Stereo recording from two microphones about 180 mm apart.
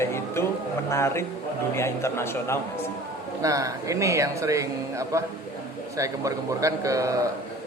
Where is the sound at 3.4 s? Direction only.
20° right (ahead or behind).